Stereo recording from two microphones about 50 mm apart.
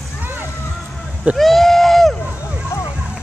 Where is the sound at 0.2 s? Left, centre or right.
Right.